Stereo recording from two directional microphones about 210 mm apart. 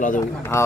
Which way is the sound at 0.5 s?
10° left (ahead or behind).